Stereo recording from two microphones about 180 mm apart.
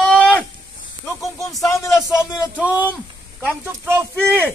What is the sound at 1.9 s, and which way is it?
Speech, 5° right (ahead or behind).